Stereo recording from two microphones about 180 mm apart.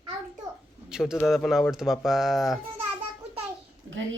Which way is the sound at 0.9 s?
5° right (ahead or behind).